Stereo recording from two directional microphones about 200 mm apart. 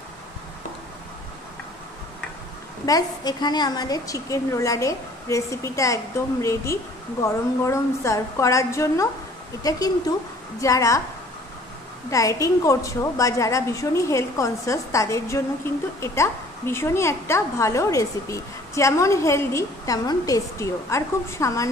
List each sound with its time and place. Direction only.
2.8 s a woman's voice: 20° left (ahead or behind)
12.1 s a woman's voice: 15° left (ahead or behind)